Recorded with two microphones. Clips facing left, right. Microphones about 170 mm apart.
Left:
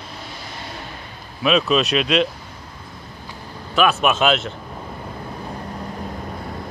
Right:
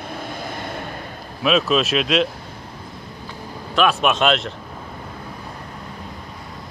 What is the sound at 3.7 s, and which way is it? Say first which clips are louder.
Speech: even; centre (ahead or behind).